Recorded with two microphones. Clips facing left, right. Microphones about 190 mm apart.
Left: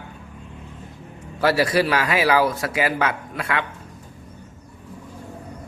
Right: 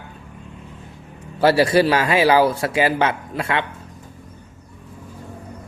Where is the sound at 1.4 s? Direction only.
30° right (ahead or behind).